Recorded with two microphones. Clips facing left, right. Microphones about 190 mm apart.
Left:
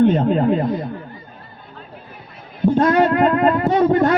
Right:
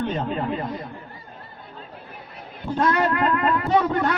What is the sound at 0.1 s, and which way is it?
Speech, 50° left (ahead or behind).